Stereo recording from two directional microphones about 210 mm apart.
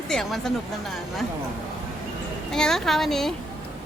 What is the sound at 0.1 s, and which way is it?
Speech, centre (ahead or behind).